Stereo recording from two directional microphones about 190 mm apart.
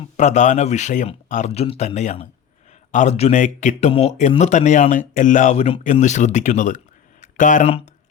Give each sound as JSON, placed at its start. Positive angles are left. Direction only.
{"t": 0.2, "sound": "speech", "side_deg": 40}